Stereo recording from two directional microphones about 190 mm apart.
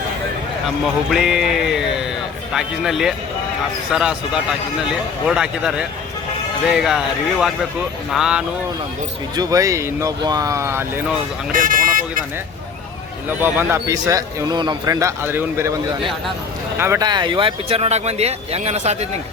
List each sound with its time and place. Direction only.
1.1 s speech: centre (ahead or behind)
4.9 s speech: 5° right (ahead or behind)
9.3 s speech: 20° right (ahead or behind)
11.5 s speech: 45° right (ahead or behind)
13.2 s speech: 10° right (ahead or behind)
16.7 s speech: 15° right (ahead or behind); by 19.0 s 35° right (ahead or behind)